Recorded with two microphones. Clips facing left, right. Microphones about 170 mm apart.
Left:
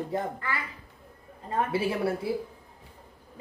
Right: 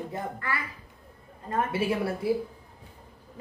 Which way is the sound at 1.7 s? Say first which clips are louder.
Right 1 dB; 30° left (ahead or behind).